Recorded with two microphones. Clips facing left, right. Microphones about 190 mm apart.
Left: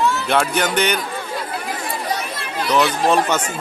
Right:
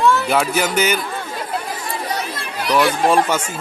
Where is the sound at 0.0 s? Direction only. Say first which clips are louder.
Right 4 dB; 55° right (ahead or behind).